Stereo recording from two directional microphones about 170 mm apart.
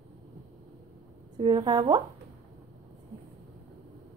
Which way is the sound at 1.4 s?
25° right (ahead or behind).